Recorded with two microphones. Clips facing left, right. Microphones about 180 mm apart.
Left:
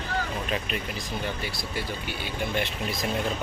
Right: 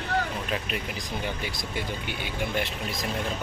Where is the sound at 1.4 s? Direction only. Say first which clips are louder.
Even; 15° right (ahead or behind).